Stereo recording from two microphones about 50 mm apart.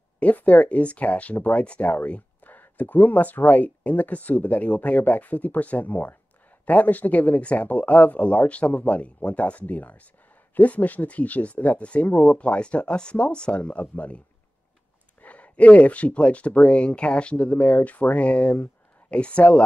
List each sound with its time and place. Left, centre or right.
0.2 s speech: left
15.2 s speech: left